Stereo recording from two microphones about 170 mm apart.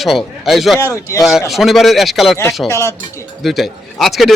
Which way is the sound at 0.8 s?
20° left (ahead or behind).